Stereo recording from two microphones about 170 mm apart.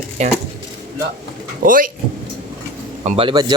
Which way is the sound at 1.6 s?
55° right (ahead or behind).